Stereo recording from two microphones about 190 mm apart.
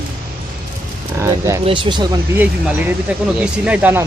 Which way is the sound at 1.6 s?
25° right (ahead or behind).